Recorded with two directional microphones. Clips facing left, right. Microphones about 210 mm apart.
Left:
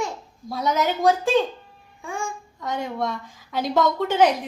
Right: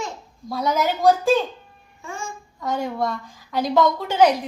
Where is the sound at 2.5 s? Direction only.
Centre (ahead or behind).